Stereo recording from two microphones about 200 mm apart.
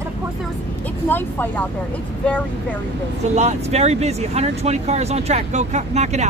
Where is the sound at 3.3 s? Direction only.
35° right (ahead or behind).